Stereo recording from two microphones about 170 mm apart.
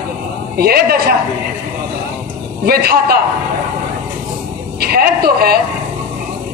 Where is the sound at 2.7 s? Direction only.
65° right (ahead or behind).